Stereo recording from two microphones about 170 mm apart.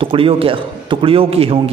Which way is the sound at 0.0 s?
30° right (ahead or behind).